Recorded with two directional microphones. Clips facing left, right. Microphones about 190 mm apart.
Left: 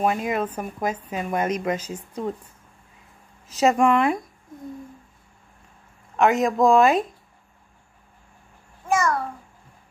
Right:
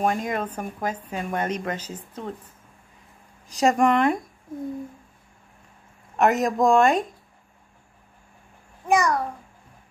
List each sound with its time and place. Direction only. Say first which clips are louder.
0.0 s a woman's voice: left 2 dB; 10° left (ahead or behind)
3.4 s speech: left 1 dB; 5° left (ahead or behind)
6.1 s speech: left 1 dB; centre (ahead or behind)
8.8 s babbling: right 2 dB; 15° right (ahead or behind)